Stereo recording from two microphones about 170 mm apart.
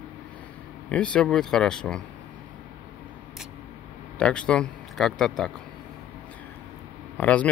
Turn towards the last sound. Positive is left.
turn(degrees=10)  # may be behind; listen again after turning